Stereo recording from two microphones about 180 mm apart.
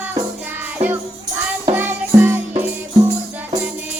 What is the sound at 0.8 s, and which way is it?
Music, 35° right (ahead or behind).